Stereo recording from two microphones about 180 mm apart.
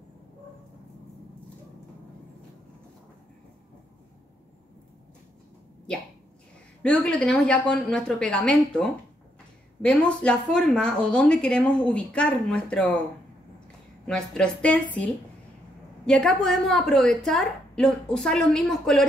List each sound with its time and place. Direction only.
6.8 s speech: 5° left (ahead or behind)
14.0 s speech: 5° left (ahead or behind)
16.1 s speech: 5° left (ahead or behind)